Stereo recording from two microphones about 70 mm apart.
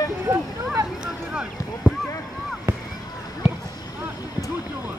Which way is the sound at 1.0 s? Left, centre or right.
Centre.